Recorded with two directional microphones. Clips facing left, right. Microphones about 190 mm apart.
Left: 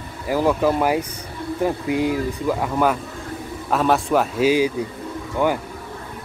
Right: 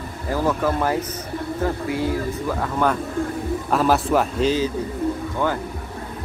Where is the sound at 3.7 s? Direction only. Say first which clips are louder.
Left 1 dB; centre (ahead or behind).